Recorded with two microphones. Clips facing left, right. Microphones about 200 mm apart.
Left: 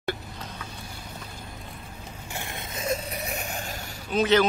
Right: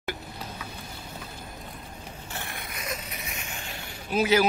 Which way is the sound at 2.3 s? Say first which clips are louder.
Left 3 dB; 20° left (ahead or behind).